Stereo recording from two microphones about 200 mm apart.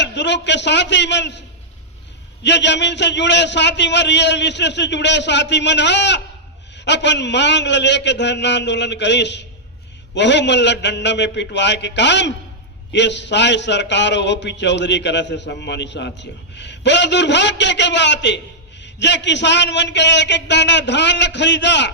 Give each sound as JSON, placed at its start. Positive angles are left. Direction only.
{"t": 0.0, "sound": "a man's voice", "side_deg": 60}